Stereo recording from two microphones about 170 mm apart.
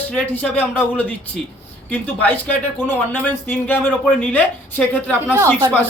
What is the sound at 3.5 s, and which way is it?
Speech, 10° left (ahead or behind).